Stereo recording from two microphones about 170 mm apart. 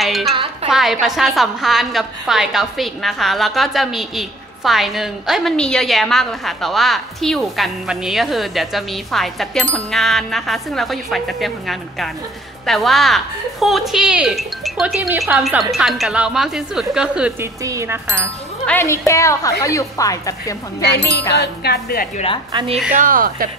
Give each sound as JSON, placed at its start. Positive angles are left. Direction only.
{"t": 0.0, "sound": "music", "side_deg": 0}
{"t": 0.3, "sound": "music", "side_deg": -35}
{"t": 0.7, "sound": "a woman's voice", "side_deg": 0}
{"t": 18.7, "sound": "a woman's voice", "side_deg": 15}
{"t": 21.3, "sound": "a sound", "side_deg": 75}
{"t": 22.1, "sound": "a woman's voice", "side_deg": 35}
{"t": 22.5, "sound": "speech", "side_deg": -25}
{"t": 22.8, "sound": "speech", "side_deg": -55}